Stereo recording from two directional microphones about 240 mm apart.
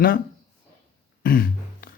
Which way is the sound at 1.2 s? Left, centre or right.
Left.